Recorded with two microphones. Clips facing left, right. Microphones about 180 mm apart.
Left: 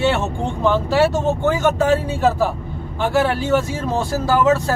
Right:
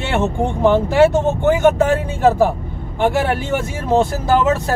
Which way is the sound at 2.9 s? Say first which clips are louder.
Right 1 dB; 20° right (ahead or behind).